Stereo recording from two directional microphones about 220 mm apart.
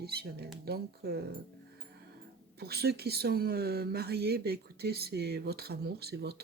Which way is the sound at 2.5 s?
45° right (ahead or behind).